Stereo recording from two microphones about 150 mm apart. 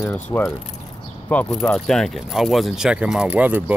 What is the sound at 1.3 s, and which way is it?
Speech, 5° left (ahead or behind).